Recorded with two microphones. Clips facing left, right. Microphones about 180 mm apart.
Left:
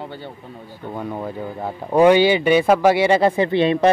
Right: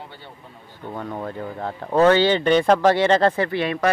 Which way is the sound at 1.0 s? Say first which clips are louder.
Left 2 dB; 10° left (ahead or behind).